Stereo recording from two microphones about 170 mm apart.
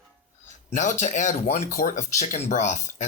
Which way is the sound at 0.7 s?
45° left (ahead or behind).